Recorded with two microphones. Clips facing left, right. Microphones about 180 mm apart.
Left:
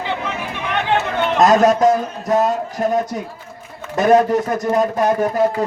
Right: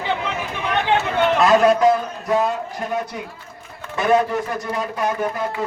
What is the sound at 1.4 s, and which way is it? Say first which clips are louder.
A man's voice: left 3 dB; 40° left (ahead or behind).